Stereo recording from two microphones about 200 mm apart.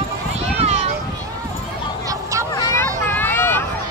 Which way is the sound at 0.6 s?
30° right (ahead or behind).